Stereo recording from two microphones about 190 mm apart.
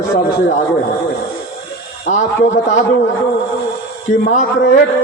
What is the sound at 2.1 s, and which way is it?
Speech, 40° left (ahead or behind).